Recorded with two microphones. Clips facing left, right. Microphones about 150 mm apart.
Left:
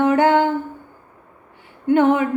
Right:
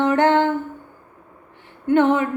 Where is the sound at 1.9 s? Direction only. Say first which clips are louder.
Left 1 dB; 10° left (ahead or behind).